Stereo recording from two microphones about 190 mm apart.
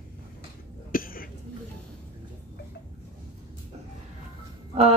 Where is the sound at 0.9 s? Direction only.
50° left (ahead or behind).